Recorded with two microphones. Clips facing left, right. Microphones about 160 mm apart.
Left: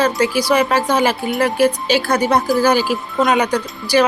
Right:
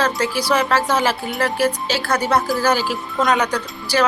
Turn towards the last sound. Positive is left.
turn(degrees=10)  # may be behind; listen again after turning